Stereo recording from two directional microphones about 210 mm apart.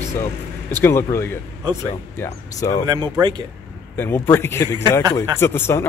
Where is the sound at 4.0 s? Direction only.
10° left (ahead or behind).